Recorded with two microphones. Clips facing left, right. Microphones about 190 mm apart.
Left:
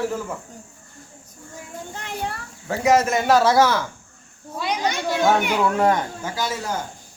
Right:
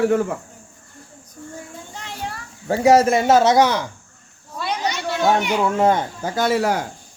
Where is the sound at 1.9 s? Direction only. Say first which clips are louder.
Left 3 dB; 50° left (ahead or behind).